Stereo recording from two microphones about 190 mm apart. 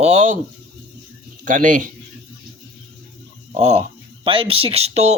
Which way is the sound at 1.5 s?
45° right (ahead or behind).